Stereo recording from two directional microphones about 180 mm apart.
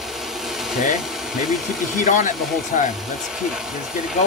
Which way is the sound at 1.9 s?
45° left (ahead or behind).